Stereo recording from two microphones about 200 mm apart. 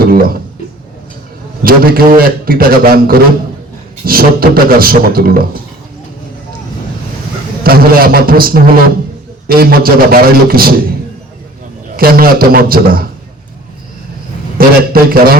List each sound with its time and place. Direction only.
0.0 s speech: 50° right (ahead or behind)
1.6 s a man's voice: 45° right (ahead or behind)
7.6 s a man's voice: 50° right (ahead or behind)
11.9 s a man's voice: 50° right (ahead or behind)
14.6 s a man's voice: 45° right (ahead or behind)